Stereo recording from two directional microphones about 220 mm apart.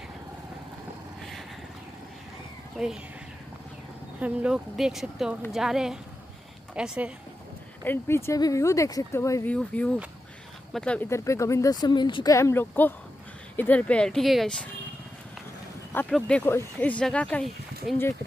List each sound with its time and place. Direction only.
4.2 s speech: 5° right (ahead or behind)
7.8 s speech: 10° left (ahead or behind)
15.9 s speech: 5° left (ahead or behind)